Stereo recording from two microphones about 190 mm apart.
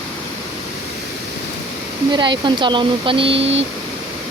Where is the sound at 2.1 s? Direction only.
25° right (ahead or behind).